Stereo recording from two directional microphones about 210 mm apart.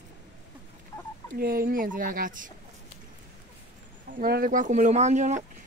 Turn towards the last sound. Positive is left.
turn(degrees=-35)  # may be behind; listen again after turning